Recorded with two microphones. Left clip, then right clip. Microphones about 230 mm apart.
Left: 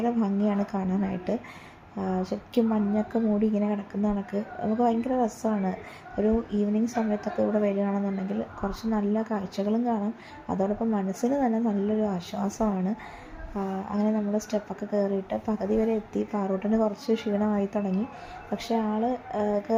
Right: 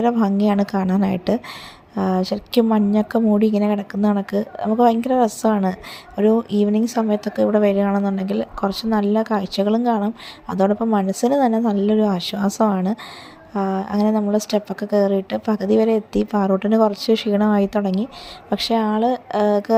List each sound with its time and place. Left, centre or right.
0.0 s speech: right